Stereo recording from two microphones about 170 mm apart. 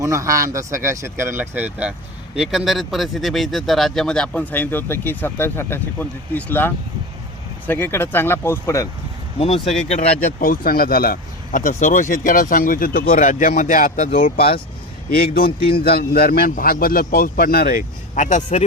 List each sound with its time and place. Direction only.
0.0 s speech: 20° right (ahead or behind); by 8.9 s 15° left (ahead or behind)
9.4 s speech: 40° left (ahead or behind)
10.4 s a man's voice: 55° left (ahead or behind)